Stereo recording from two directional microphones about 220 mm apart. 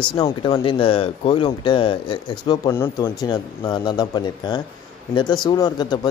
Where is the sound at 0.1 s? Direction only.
20° left (ahead or behind).